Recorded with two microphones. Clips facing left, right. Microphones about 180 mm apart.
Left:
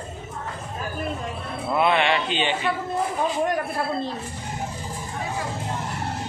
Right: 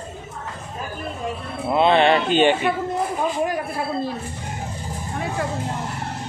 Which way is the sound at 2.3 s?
50° right (ahead or behind).